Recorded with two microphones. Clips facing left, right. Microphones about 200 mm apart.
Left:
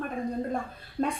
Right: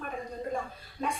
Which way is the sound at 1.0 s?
60° left (ahead or behind).